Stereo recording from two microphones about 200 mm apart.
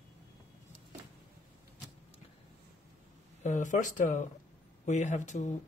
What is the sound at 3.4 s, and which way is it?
Speech, 40° left (ahead or behind).